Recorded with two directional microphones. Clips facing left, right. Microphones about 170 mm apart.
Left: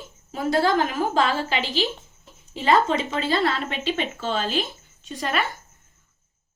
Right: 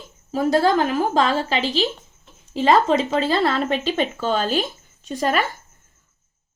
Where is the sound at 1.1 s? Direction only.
40° right (ahead or behind).